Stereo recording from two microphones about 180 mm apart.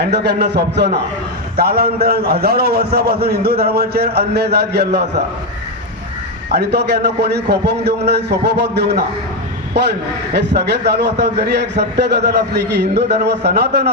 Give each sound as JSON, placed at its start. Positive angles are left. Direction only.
{"t": 0.0, "sound": "a man's voice", "side_deg": -65}
{"t": 6.5, "sound": "a man's voice", "side_deg": -65}